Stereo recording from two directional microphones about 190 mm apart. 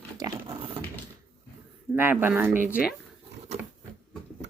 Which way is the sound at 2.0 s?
10° right (ahead or behind).